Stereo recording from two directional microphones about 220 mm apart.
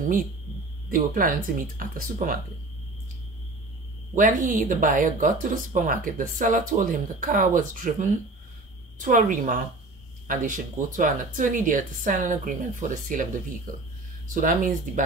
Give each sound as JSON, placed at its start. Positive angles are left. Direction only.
{"t": 0.8, "sound": "speech", "side_deg": -40}
{"t": 4.1, "sound": "speech", "side_deg": -35}